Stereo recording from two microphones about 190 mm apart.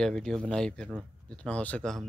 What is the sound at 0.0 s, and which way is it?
Speech, 5° left (ahead or behind).